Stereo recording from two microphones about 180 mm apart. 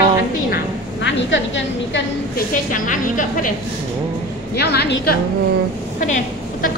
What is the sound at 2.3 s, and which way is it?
A woman's voice, 45° left (ahead or behind).